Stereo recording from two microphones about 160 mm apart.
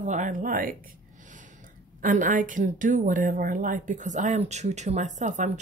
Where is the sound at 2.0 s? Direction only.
55° right (ahead or behind).